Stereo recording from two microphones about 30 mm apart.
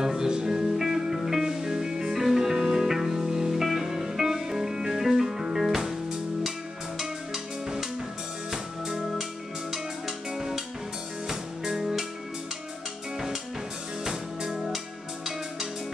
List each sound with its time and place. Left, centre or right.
0.0 s music: centre
7.0 s music: centre
14.0 s music: centre